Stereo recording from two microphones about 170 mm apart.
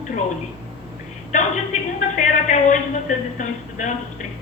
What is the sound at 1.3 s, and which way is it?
A woman's voice, 50° left (ahead or behind).